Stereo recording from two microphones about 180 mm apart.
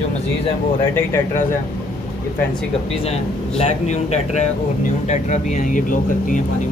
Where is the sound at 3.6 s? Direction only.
40° left (ahead or behind).